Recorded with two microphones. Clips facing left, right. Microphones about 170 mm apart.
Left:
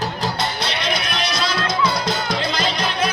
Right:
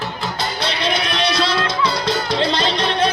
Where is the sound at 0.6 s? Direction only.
30° right (ahead or behind).